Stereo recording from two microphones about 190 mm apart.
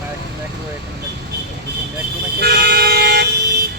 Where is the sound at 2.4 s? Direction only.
55° right (ahead or behind).